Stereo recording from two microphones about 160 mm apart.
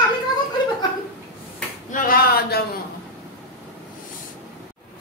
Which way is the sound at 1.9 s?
60° left (ahead or behind).